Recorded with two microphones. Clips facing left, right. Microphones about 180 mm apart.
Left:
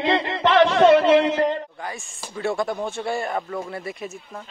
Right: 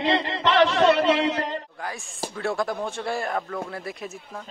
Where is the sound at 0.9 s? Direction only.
60° left (ahead or behind).